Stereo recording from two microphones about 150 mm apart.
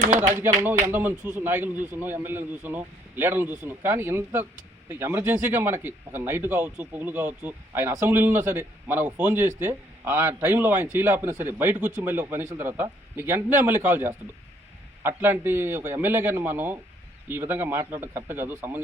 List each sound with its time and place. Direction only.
0.2 s a man's voice: 15° right (ahead or behind)
11.8 s speech: 60° right (ahead or behind)
12.0 s a man's voice: 15° right (ahead or behind)